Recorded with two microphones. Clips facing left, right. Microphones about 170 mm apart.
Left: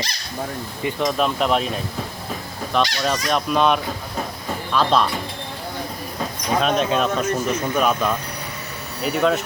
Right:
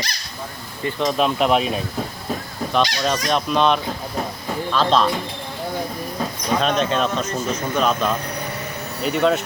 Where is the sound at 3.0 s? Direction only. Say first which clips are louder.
Right 1 dB; 5° left (ahead or behind).